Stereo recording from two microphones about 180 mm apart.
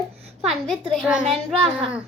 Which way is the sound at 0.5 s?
Centre (ahead or behind).